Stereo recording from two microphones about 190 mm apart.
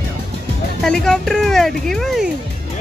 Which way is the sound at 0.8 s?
Centre (ahead or behind).